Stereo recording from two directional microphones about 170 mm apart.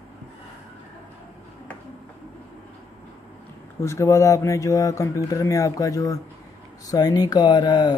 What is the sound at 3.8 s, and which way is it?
Speech, 15° left (ahead or behind).